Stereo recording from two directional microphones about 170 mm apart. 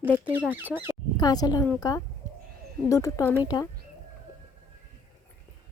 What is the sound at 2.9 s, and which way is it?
Speech, 20° left (ahead or behind).